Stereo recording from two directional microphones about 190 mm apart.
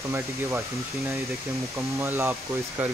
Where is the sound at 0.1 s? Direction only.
15° right (ahead or behind).